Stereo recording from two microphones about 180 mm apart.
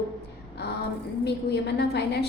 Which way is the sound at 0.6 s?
65° left (ahead or behind).